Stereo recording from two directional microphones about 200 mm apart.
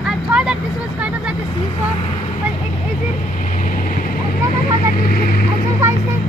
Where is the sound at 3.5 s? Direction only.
45° left (ahead or behind).